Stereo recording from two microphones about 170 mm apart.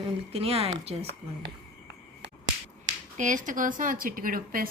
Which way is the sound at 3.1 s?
50° right (ahead or behind).